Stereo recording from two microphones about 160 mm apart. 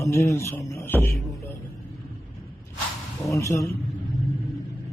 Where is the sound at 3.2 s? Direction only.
20° left (ahead or behind).